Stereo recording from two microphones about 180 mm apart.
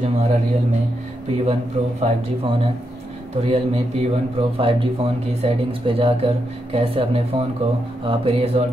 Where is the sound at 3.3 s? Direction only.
35° right (ahead or behind).